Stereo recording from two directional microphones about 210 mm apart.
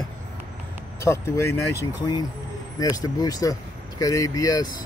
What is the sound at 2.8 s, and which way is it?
Speech, 20° left (ahead or behind).